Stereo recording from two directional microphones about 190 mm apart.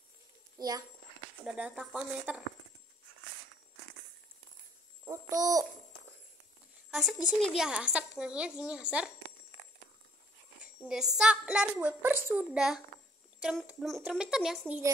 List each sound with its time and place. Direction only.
0.6 s a child's voice: 20° right (ahead or behind)
1.4 s a woman's voice: 5° right (ahead or behind)
5.0 s a child's voice: 20° right (ahead or behind)
6.9 s a woman's voice: centre (ahead or behind)
10.9 s a woman's voice: 5° right (ahead or behind)